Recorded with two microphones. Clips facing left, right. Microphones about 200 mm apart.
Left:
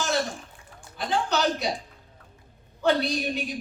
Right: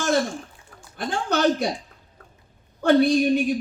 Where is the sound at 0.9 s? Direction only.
50° right (ahead or behind).